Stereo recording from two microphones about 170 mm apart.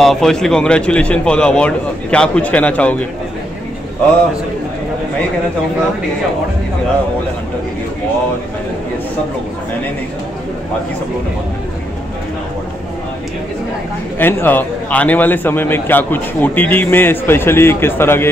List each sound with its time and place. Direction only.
0.0 s a man's voice: centre (ahead or behind)
14.1 s a man's voice: 10° left (ahead or behind)